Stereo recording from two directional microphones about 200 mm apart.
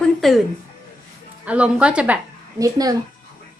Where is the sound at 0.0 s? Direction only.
Centre (ahead or behind).